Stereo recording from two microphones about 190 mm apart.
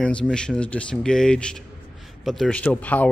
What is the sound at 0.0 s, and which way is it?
Speech, 5° left (ahead or behind).